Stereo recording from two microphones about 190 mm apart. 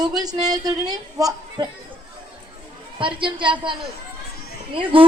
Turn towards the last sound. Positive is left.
turn(degrees=-30)  # may be behind; listen again after turning